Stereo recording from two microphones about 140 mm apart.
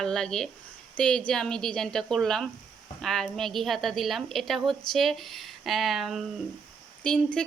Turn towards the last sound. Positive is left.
turn(degrees=5)  # may be behind; listen again after turning